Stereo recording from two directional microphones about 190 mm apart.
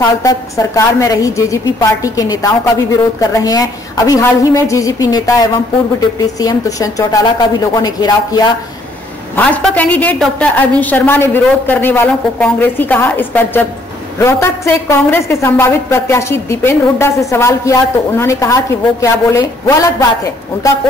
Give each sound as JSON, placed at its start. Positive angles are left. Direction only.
{"t": 0.0, "sound": "a woman's voice", "side_deg": 20}
{"t": 9.4, "sound": "a woman's voice", "side_deg": 10}